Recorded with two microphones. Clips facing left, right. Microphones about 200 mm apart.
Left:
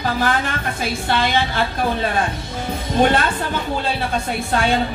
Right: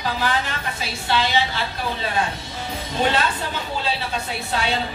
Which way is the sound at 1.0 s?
55° left (ahead or behind).